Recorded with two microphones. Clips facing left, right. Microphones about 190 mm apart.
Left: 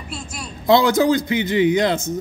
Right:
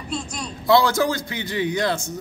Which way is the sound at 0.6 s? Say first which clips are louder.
Left 3 dB; 20° left (ahead or behind).